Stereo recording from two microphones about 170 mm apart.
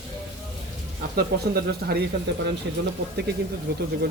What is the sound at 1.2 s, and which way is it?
Speech, 65° right (ahead or behind).